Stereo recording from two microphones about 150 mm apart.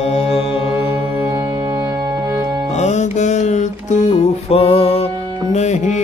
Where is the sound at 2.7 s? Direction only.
50° left (ahead or behind).